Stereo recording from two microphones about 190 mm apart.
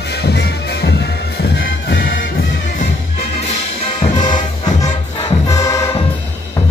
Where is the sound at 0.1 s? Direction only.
60° left (ahead or behind).